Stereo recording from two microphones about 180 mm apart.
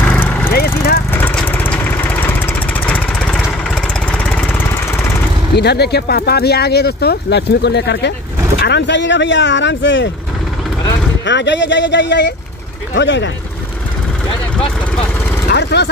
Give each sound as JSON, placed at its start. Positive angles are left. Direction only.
{"t": 0.0, "sound": "a sound", "side_deg": 10}
{"t": 0.5, "sound": "vehicle", "side_deg": 55}
{"t": 1.1, "sound": "vehicle", "side_deg": 10}
{"t": 3.4, "sound": "lawn mower", "side_deg": -5}
{"t": 4.2, "sound": "lawn mower", "side_deg": 10}
{"t": 5.6, "sound": "speech", "side_deg": 65}
{"t": 11.2, "sound": "speech", "side_deg": 80}
{"t": 15.5, "sound": "speech", "side_deg": 70}